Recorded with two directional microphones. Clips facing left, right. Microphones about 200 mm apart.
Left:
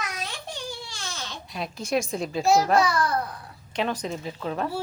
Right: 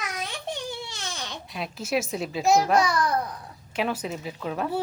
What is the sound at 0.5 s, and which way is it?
Crying, 20° right (ahead or behind).